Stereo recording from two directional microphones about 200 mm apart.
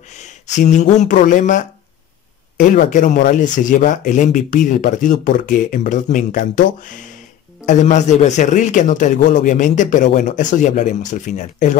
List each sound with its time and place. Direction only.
0.2 s speech: 35° left (ahead or behind)